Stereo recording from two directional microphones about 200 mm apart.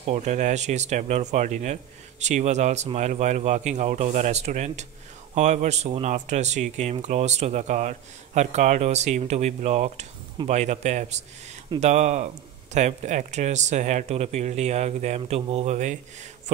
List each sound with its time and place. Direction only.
0.0 s speech: 35° right (ahead or behind)